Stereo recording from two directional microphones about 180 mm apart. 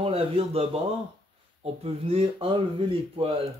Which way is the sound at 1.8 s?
35° right (ahead or behind).